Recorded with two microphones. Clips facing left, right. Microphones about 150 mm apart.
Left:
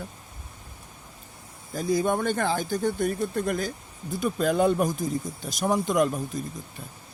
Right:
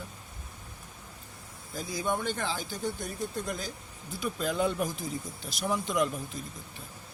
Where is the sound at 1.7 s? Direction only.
50° left (ahead or behind).